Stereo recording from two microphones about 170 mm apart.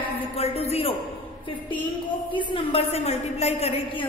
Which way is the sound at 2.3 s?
30° left (ahead or behind).